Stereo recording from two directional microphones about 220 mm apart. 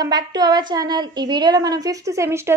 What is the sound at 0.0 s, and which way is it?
A woman's voice, 20° right (ahead or behind).